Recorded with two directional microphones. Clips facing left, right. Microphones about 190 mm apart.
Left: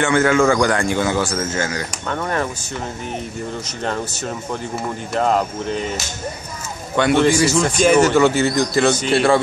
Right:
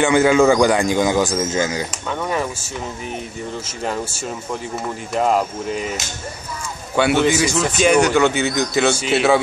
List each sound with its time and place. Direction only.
0.0 s speech: 15° right (ahead or behind)
2.0 s speech: 5° right (ahead or behind)
5.1 s speech: 5° right (ahead or behind)
7.0 s speech: 5° right (ahead or behind)